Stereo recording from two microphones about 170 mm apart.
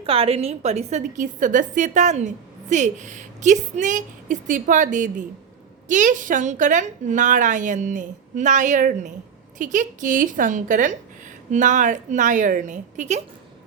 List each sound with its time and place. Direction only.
0.0 s a woman's voice: 35° right (ahead or behind)